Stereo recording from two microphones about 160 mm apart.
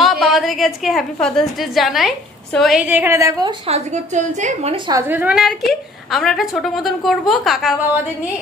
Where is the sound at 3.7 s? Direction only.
45° right (ahead or behind).